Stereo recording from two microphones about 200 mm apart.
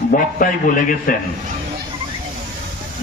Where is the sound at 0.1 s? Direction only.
45° left (ahead or behind).